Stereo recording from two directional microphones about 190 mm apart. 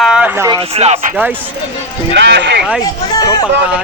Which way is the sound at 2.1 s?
70° right (ahead or behind).